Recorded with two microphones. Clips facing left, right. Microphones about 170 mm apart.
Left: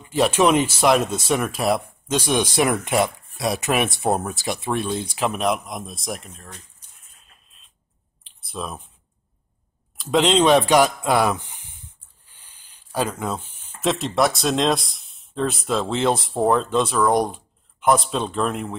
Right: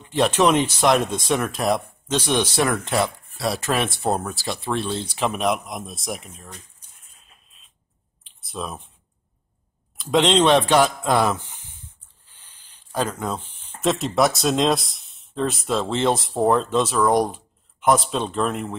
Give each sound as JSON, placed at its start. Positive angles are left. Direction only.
{"t": 0.0, "sound": "speech", "side_deg": 5}
{"t": 5.1, "sound": "speech", "side_deg": 5}
{"t": 7.2, "sound": "printer", "side_deg": 0}
{"t": 8.2, "sound": "clicking", "side_deg": 0}
{"t": 9.9, "sound": "speech", "side_deg": 0}
{"t": 12.3, "sound": "rub", "side_deg": 10}
{"t": 13.7, "sound": "speech", "side_deg": 0}